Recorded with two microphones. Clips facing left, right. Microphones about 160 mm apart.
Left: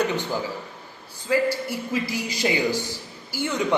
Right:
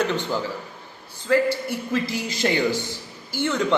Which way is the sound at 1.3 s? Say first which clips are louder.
Right 2 dB; 10° left (ahead or behind).